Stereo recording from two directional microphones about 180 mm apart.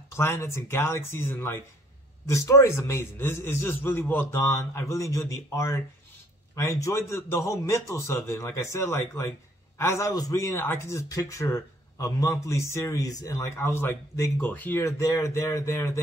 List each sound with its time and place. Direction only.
0.1 s speech: 15° left (ahead or behind)